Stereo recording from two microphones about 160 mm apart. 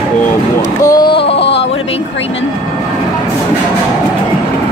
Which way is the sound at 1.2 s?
90° left.